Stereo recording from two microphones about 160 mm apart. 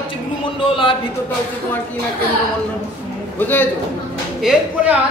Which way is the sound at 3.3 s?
10° left (ahead or behind).